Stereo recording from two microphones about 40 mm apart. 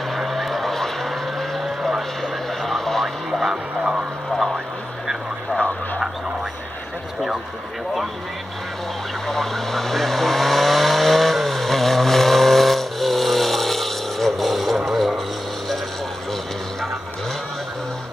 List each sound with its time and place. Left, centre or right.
0.2 s vehicle: centre
2.6 s radio: centre
3.3 s a sound: centre
9.3 s vehicle: centre